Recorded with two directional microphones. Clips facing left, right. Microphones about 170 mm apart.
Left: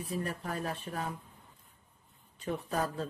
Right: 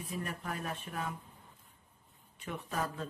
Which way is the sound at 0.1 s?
35° left (ahead or behind).